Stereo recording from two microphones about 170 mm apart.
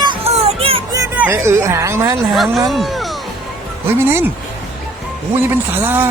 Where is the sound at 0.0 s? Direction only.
30° right (ahead or behind).